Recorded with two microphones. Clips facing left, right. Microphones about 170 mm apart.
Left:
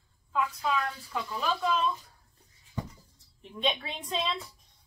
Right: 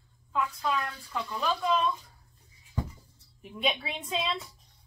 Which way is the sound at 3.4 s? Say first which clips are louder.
Even; 5° right (ahead or behind).